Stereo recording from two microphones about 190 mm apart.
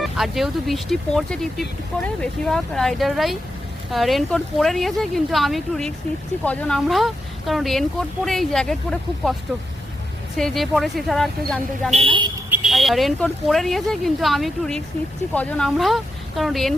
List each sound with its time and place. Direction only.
0.0 s speech: centre (ahead or behind)
10.3 s speech: centre (ahead or behind)
11.9 s speech: 30° right (ahead or behind)
12.5 s speech: centre (ahead or behind)